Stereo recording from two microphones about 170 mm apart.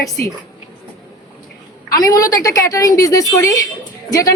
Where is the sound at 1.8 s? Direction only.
20° left (ahead or behind).